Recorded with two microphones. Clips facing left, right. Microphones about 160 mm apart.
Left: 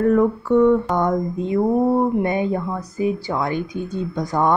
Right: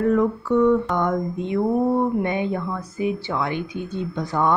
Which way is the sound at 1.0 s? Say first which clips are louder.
Left 2 dB; 35° left (ahead or behind).